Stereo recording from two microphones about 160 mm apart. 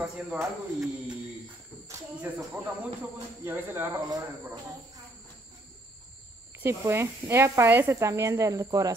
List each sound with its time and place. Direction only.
0.0 s speech: 10° right (ahead or behind)
6.6 s speech: 15° right (ahead or behind)